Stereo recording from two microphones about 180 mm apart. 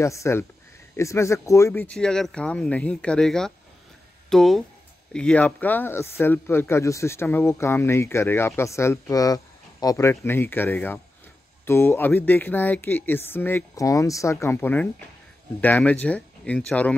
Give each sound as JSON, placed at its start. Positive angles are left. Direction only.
{"t": 0.0, "sound": "speech", "side_deg": 15}